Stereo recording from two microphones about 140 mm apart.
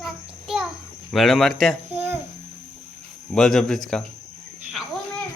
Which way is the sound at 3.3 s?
5° left (ahead or behind).